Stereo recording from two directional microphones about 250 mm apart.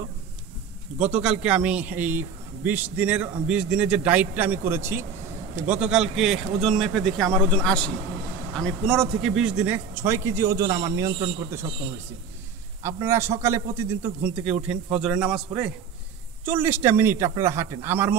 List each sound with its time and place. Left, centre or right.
1.0 s a man's voice: centre
12.8 s a man's voice: centre